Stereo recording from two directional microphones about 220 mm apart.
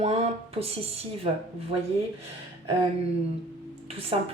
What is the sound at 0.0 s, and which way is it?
A woman's voice, 30° right (ahead or behind).